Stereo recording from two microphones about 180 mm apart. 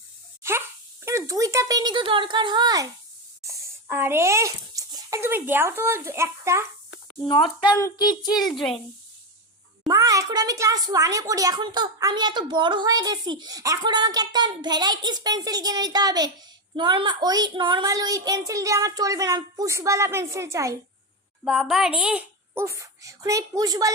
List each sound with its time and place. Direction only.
1.0 s speech: 15° right (ahead or behind)
7.3 s speech: 25° left (ahead or behind)
8.3 s a woman's voice: centre (ahead or behind)
9.8 s speech: 20° right (ahead or behind)
21.4 s a child's voice: centre (ahead or behind); by 23.9 s 20° right (ahead or behind)